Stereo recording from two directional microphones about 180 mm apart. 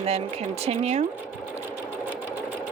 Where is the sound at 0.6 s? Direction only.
35° right (ahead or behind).